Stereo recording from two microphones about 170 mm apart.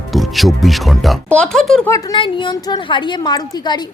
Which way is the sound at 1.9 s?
20° left (ahead or behind).